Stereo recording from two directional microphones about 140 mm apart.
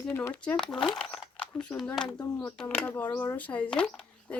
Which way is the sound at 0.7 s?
35° left (ahead or behind).